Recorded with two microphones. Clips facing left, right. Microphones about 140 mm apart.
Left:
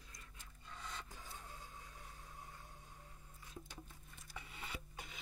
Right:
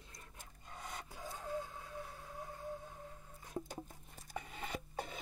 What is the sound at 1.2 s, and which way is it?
Printer, 45° right (ahead or behind).